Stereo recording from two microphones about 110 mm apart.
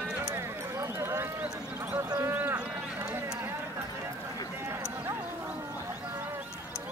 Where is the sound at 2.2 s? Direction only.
15° right (ahead or behind).